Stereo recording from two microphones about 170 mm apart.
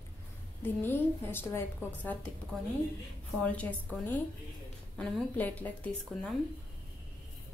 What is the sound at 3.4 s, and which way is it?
A woman's voice, 10° left (ahead or behind).